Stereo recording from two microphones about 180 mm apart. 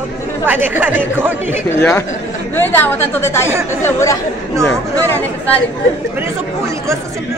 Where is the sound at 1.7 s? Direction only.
10° left (ahead or behind).